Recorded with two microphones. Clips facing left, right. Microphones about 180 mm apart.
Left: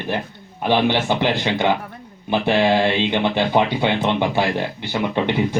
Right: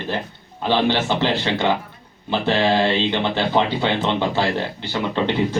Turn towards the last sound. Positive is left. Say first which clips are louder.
# left 1 dB
turn(degrees=15)  # may be behind; listen again after turning